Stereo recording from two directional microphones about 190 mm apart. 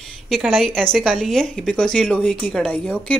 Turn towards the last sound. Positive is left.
turn(degrees=5)  # may be behind; listen again after turning